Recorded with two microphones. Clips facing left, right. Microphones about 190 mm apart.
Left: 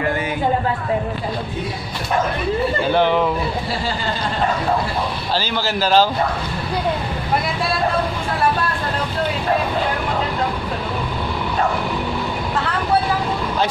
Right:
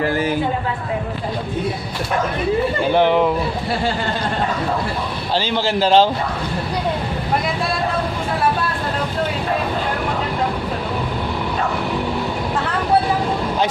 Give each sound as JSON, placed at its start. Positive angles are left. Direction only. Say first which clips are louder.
{"t": 0.0, "sound": "a sound", "louder": "right 2 dB", "side_deg": -35}
{"t": 2.9, "sound": "speech", "louder": "right 2 dB", "side_deg": -15}
{"t": 5.3, "sound": "a man's voice", "louder": "right 4 dB", "side_deg": -25}